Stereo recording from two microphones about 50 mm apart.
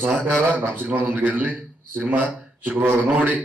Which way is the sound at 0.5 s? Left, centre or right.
Right.